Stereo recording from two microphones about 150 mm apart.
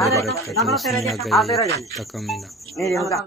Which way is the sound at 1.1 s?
Centre (ahead or behind).